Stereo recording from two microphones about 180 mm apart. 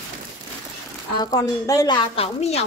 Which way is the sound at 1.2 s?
20° left (ahead or behind).